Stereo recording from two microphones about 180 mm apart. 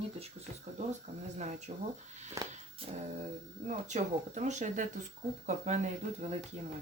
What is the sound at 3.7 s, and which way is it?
Speech, 40° right (ahead or behind).